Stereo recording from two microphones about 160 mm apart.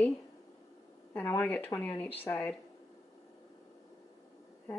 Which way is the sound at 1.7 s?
10° left (ahead or behind).